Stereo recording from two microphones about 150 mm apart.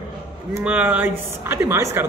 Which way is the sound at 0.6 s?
10° right (ahead or behind).